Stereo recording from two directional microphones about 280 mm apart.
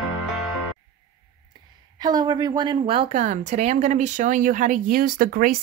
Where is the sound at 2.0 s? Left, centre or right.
Centre.